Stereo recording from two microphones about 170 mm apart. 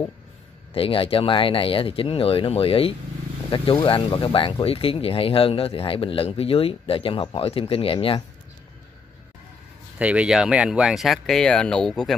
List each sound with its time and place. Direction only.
0.7 s speech: 35° left (ahead or behind)
9.9 s speech: 5° right (ahead or behind)